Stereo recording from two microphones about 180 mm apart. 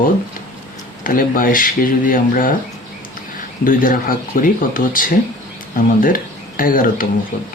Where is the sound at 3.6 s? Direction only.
50° left (ahead or behind).